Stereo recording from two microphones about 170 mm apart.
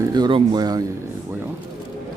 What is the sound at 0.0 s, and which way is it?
Speech, 25° right (ahead or behind).